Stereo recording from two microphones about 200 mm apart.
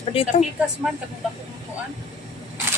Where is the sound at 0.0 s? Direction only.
30° left (ahead or behind).